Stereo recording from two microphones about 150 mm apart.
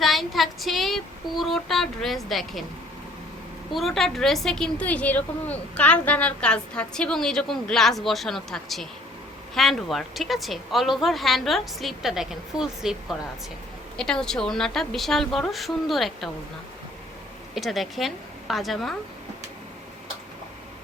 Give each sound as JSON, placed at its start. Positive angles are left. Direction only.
{"t": 0.0, "sound": "a woman's voice", "side_deg": 0}
{"t": 3.8, "sound": "a woman's voice", "side_deg": 0}
{"t": 17.5, "sound": "a woman's voice", "side_deg": 0}